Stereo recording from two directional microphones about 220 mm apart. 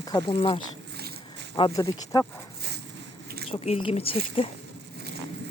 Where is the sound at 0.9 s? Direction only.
45° right (ahead or behind).